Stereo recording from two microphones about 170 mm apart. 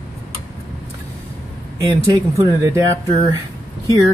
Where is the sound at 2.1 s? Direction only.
20° right (ahead or behind).